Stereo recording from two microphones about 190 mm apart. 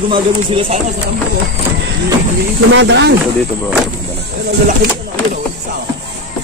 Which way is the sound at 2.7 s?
70° right (ahead or behind).